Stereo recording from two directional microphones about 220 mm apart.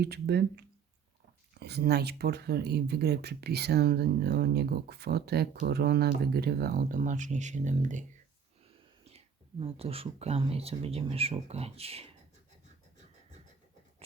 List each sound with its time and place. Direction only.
0.0 s speech: 45° right (ahead or behind)
9.0 s speech: 25° right (ahead or behind)